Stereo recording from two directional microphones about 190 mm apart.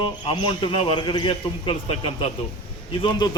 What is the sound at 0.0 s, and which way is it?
A man's voice, 25° left (ahead or behind).